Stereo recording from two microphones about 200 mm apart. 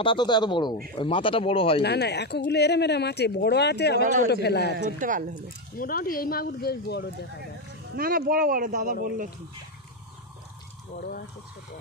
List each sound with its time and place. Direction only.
0.0 s speech: 25° left (ahead or behind)
1.8 s speech: 55° left (ahead or behind)
4.7 s speech: 40° right (ahead or behind)
5.8 s speech: 45° left (ahead or behind)
7.9 s speech: 45° right (ahead or behind)
11.0 s speech: 50° left (ahead or behind)